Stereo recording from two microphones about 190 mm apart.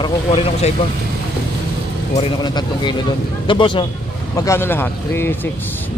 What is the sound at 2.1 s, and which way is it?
Speech, 25° left (ahead or behind).